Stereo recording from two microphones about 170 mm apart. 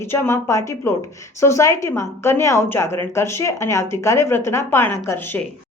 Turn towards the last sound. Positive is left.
turn(degrees=15)  # may be behind; listen again after turning